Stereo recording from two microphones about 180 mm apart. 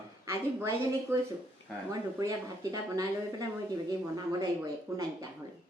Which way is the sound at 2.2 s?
20° right (ahead or behind).